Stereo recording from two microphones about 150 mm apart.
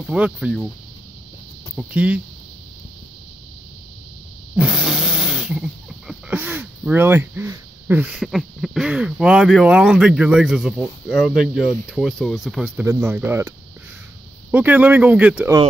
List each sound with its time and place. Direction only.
0.0 s speech: 5° right (ahead or behind)
1.8 s speech: 10° right (ahead or behind)
4.6 s speech: 5° right (ahead or behind)
12.8 s speech: 15° right (ahead or behind)
14.5 s speech: 10° right (ahead or behind)